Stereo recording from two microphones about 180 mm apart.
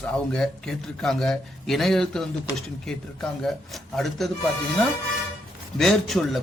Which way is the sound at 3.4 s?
Centre (ahead or behind).